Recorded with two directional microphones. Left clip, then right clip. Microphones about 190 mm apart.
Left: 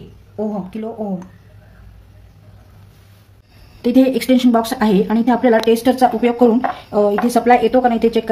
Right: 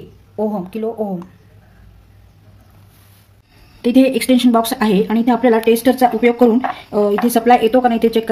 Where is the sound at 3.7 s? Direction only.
15° right (ahead or behind).